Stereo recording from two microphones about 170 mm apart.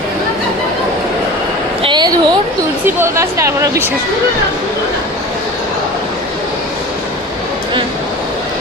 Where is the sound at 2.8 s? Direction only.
15° right (ahead or behind).